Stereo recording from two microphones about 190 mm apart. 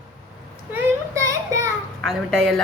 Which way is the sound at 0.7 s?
15° right (ahead or behind).